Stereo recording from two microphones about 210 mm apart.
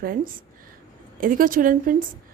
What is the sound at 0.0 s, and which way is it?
A woman's voice, 40° right (ahead or behind).